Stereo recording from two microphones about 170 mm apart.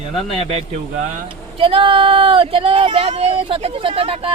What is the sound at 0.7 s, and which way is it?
Speech, 45° right (ahead or behind).